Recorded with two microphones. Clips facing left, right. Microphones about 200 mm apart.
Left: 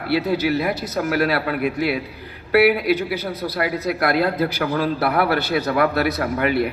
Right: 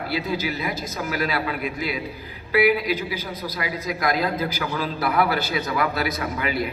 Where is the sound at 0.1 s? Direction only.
60° left (ahead or behind).